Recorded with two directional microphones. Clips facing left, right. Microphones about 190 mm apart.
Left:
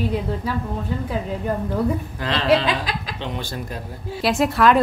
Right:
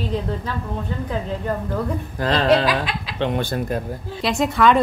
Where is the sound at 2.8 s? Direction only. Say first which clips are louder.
Right 1 dB; 40° left (ahead or behind).